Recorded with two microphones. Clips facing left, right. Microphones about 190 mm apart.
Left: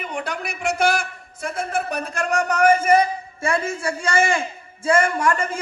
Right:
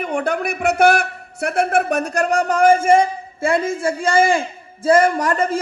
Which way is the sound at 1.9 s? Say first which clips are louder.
Right 6 dB; 45° right (ahead or behind).